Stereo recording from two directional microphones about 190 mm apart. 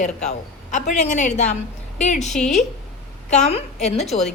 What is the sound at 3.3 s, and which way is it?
Speech, 35° left (ahead or behind).